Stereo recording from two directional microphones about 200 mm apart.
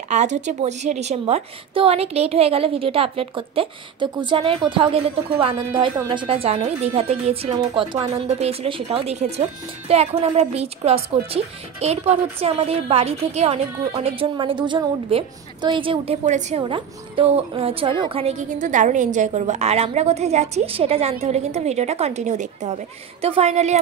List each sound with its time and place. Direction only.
0.1 s a woman's voice: 35° right (ahead or behind)